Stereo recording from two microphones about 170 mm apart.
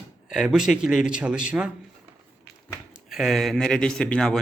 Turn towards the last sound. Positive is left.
turn(degrees=5)  # may be behind; listen again after turning